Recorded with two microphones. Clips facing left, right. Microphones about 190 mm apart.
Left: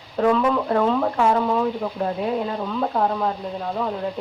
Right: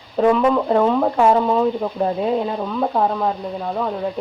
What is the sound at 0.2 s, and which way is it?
Speech, 15° right (ahead or behind).